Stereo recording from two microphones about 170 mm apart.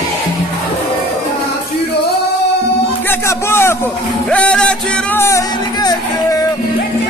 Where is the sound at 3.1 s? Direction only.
15° left (ahead or behind).